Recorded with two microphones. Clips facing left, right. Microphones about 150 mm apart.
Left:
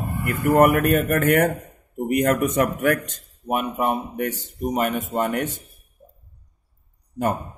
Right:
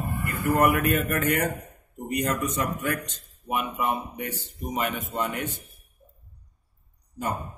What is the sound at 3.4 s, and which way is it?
A man's voice, 45° left (ahead or behind).